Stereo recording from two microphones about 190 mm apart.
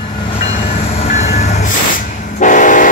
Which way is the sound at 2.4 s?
40° left (ahead or behind).